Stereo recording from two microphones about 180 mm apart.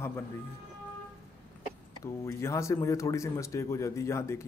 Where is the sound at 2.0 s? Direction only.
15° left (ahead or behind).